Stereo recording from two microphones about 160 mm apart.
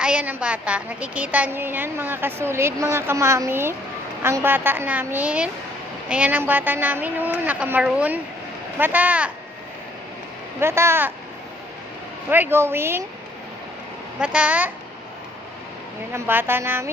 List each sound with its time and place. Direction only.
0.0 s a woman's voice: 5° right (ahead or behind)
10.6 s a woman's voice: 15° right (ahead or behind)
12.3 s a woman's voice: 15° right (ahead or behind)
14.2 s a woman's voice: 5° right (ahead or behind)
16.1 s a woman's voice: 15° right (ahead or behind)